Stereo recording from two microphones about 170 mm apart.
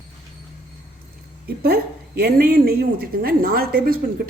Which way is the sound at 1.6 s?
65° right (ahead or behind).